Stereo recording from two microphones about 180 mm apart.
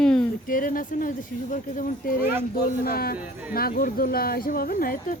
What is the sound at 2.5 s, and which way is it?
Speech, 55° left (ahead or behind).